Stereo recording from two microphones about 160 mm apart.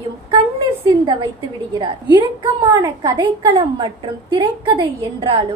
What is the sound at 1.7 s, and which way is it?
A woman's voice, 25° right (ahead or behind).